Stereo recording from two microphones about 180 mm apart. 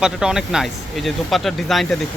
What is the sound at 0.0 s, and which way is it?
Speech, 5° right (ahead or behind).